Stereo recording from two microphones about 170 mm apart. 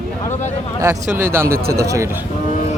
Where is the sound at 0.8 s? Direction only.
15° right (ahead or behind).